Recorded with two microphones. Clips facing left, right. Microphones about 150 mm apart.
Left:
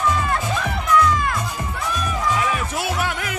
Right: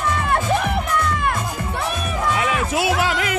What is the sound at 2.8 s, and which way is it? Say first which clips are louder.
Music: right 4 dB; 90° right.